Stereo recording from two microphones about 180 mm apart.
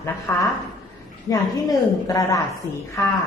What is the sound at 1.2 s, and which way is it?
A woman's voice, 20° left (ahead or behind).